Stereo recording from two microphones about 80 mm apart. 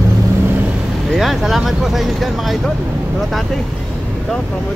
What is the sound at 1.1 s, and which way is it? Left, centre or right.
Speech, centre.